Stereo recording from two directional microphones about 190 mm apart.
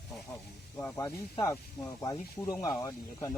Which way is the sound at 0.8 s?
10° left (ahead or behind).